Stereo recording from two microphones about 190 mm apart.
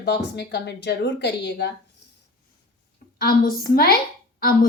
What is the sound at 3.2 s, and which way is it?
Speech, 50° left (ahead or behind).